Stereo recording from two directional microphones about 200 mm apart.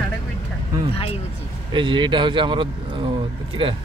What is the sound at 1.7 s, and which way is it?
A man's voice, 25° right (ahead or behind).